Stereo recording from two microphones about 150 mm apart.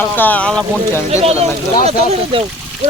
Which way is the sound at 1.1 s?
45° right (ahead or behind).